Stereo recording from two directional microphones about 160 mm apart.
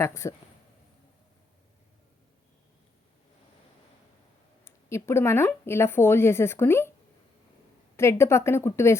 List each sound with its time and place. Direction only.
0.0 s speech: 15° left (ahead or behind)
4.6 s speech: 15° left (ahead or behind)
7.9 s speech: 15° left (ahead or behind)